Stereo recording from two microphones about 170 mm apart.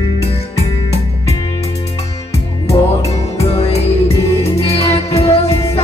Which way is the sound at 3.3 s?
35° left (ahead or behind).